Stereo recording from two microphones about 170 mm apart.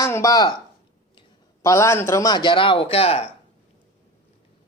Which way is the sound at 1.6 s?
15° left (ahead or behind).